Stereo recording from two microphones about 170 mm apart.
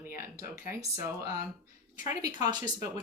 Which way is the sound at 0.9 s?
15° right (ahead or behind).